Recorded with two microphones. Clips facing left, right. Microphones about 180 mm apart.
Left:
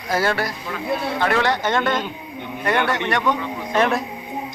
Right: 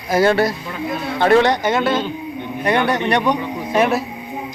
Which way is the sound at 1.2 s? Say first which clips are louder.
Right 9 dB; 30° right (ahead or behind).